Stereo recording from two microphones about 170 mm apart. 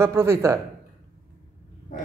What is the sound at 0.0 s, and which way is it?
Speech, 15° right (ahead or behind).